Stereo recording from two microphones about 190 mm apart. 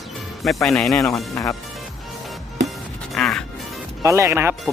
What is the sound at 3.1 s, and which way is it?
Music, 5° left (ahead or behind).